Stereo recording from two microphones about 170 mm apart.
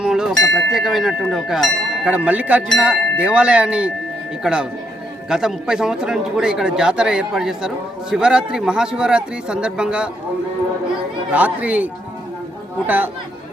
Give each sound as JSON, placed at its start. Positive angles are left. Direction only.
{"t": 0.0, "sound": "speech", "side_deg": -5}
{"t": 11.3, "sound": "speech", "side_deg": -10}